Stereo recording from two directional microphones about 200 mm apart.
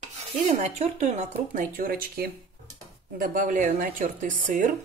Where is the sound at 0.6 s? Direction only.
35° right (ahead or behind).